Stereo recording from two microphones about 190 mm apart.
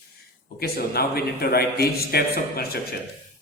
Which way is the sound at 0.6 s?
55° left (ahead or behind).